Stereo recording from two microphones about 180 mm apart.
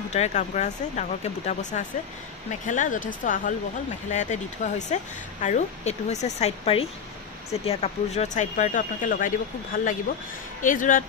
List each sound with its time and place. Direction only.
0.1 s speech: 40° left (ahead or behind)